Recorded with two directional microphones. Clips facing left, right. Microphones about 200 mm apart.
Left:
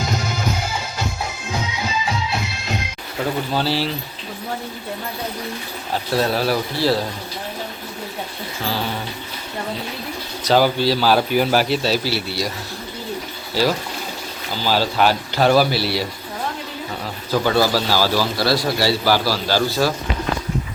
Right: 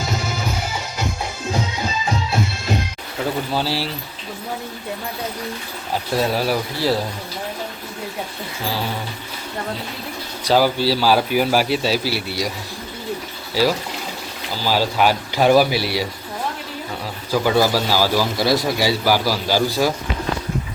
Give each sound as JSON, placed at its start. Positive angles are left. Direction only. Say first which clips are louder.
{"t": 3.5, "sound": "speech", "louder": "left 1 dB", "side_deg": -10}
{"t": 6.1, "sound": "speech", "louder": "left 1 dB", "side_deg": -10}
{"t": 8.6, "sound": "speech", "louder": "left 1 dB", "side_deg": -10}
{"t": 10.4, "sound": "speech", "louder": "even", "side_deg": -5}
{"t": 13.5, "sound": "speech", "louder": "right 1 dB", "side_deg": -10}
{"t": 17.3, "sound": "speech", "louder": "right 1 dB", "side_deg": -10}